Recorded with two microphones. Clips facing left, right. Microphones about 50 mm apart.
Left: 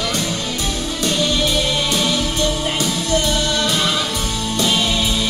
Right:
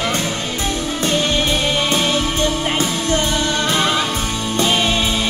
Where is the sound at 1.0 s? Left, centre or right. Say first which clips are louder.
Even; right.